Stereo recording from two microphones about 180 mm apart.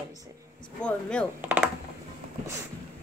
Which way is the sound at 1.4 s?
10° right (ahead or behind).